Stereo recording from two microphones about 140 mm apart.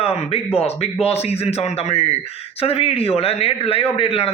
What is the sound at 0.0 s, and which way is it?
A man's voice, 45° left (ahead or behind).